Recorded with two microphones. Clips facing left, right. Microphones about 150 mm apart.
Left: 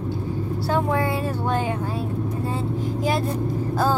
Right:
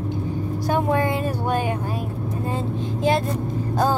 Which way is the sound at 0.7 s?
15° right (ahead or behind).